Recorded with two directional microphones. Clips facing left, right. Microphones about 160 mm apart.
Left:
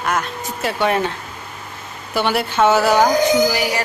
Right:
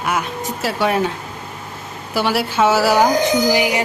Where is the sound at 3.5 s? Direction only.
15° right (ahead or behind).